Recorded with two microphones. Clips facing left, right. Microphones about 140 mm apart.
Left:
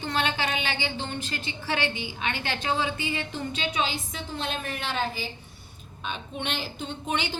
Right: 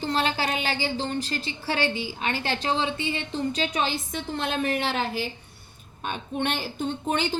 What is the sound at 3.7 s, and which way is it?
A woman's voice, 45° right (ahead or behind).